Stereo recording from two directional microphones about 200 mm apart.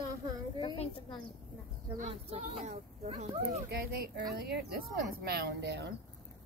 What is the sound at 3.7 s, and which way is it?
Speech, 55° right (ahead or behind).